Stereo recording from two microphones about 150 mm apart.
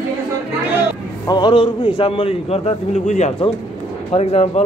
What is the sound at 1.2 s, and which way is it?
A man's voice, 30° left (ahead or behind).